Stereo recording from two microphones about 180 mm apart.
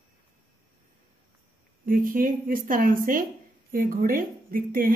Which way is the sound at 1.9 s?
50° right (ahead or behind).